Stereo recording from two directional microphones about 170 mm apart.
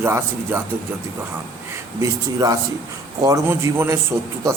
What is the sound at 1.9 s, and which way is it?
Speech, 20° right (ahead or behind).